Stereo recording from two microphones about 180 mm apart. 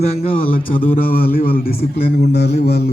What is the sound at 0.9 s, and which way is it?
A man's voice, 50° left (ahead or behind).